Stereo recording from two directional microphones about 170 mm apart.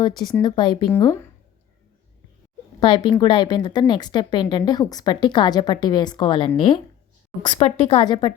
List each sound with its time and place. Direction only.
0.4 s speech: 25° left (ahead or behind)
2.8 s speech: 30° left (ahead or behind)